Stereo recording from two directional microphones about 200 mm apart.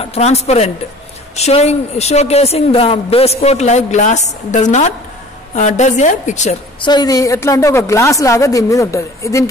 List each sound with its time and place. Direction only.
0.0 s speech: 30° left (ahead or behind)
6.8 s a woman's voice: 20° left (ahead or behind)